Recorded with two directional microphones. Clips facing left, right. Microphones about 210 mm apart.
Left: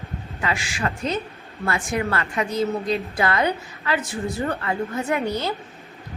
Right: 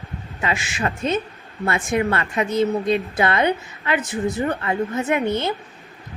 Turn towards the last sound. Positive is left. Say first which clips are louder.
# right 3 dB
turn(degrees=-20)  # may be behind; listen again after turning